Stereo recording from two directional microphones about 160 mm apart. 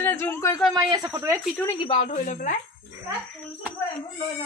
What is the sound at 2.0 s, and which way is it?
Speech, 55° left (ahead or behind).